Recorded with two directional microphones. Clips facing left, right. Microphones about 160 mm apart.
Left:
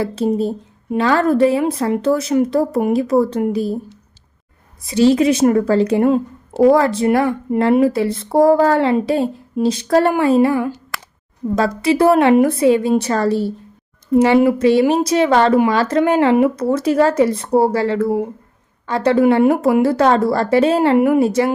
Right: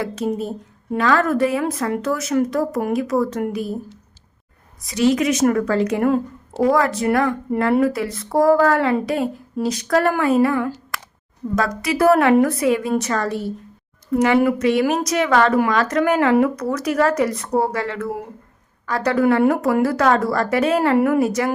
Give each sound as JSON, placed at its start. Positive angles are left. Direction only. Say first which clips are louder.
{"t": 0.0, "sound": "a woman's voice", "louder": "left 5 dB", "side_deg": 30}
{"t": 4.8, "sound": "a woman's voice", "louder": "left 5 dB", "side_deg": 30}